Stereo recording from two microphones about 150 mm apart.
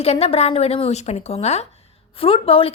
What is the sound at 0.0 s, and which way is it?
Speech, 45° left (ahead or behind).